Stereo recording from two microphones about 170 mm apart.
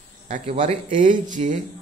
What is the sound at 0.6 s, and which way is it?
Speech, 50° right (ahead or behind).